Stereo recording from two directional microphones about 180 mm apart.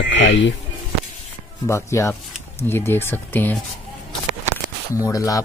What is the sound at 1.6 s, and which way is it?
Speech, 15° left (ahead or behind).